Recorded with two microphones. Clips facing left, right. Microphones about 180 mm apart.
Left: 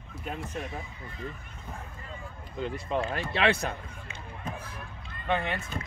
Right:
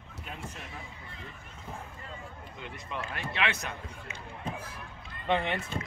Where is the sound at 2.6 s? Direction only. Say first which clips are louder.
Left 10 dB; 35° left (ahead or behind).